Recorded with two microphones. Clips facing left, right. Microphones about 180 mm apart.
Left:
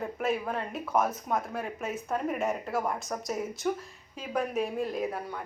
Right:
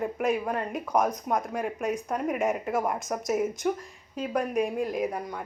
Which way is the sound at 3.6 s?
5° right (ahead or behind).